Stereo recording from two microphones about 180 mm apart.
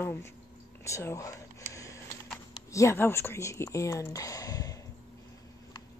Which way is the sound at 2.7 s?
15° left (ahead or behind).